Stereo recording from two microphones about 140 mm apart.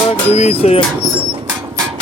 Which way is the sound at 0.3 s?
50° left (ahead or behind).